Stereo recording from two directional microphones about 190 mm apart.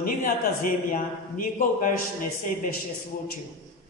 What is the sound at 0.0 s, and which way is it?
A man's voice, 45° left (ahead or behind).